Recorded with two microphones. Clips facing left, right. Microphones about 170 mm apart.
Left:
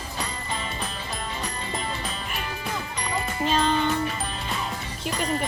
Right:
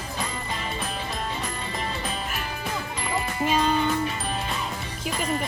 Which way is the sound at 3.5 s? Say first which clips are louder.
Even; 10° right (ahead or behind).